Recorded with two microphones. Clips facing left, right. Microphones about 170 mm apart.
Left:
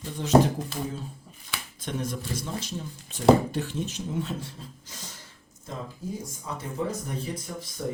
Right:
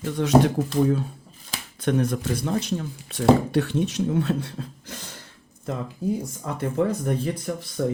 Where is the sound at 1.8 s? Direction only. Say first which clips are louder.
Right 10 dB; 60° right (ahead or behind).